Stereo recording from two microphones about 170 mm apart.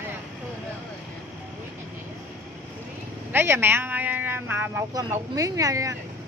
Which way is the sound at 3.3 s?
10° right (ahead or behind).